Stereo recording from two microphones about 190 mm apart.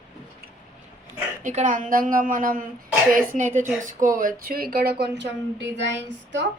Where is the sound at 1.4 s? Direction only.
40° right (ahead or behind).